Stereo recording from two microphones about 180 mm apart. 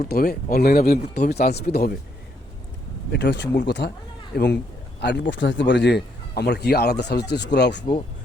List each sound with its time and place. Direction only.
0.0 s speech: 60° left (ahead or behind)
3.1 s speech: 75° left (ahead or behind)
4.9 s speech: 75° left (ahead or behind)